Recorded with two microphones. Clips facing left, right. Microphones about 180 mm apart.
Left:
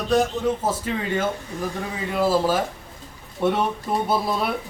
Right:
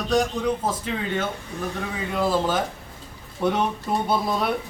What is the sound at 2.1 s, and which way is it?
Speech, 5° left (ahead or behind).